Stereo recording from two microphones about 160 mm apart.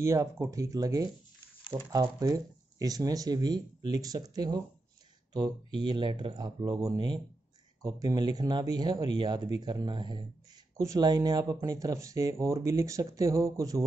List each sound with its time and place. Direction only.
0.0 s speech: 20° right (ahead or behind)